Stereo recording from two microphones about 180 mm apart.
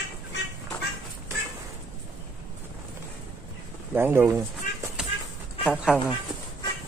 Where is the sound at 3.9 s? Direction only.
15° right (ahead or behind).